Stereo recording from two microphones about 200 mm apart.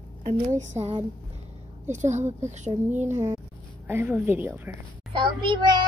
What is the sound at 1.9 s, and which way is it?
Speech, 35° right (ahead or behind).